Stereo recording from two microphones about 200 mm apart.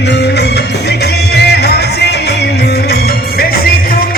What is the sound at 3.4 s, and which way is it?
Music, 50° left (ahead or behind).